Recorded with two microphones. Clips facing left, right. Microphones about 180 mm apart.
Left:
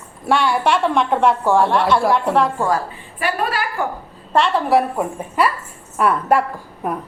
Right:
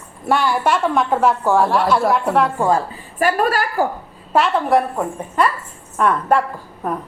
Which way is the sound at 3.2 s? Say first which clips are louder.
Right 4 dB; 45° right (ahead or behind).